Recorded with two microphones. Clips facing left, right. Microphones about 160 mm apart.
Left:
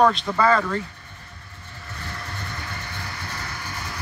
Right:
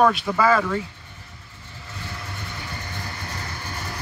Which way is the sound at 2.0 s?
10° right (ahead or behind).